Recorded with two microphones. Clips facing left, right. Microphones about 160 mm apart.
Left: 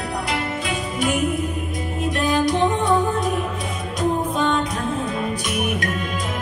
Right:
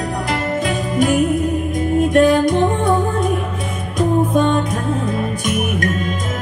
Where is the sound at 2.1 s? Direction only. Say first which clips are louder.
Right 6 dB; 50° right (ahead or behind).